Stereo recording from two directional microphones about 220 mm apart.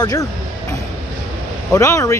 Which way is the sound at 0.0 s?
15° left (ahead or behind).